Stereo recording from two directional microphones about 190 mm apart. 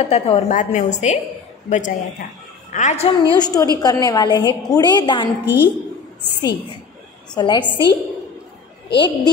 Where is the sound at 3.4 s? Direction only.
20° left (ahead or behind).